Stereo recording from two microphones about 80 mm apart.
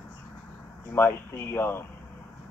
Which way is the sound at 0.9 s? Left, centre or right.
Left.